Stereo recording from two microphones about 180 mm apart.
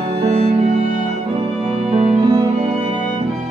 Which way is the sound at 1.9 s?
30° right (ahead or behind).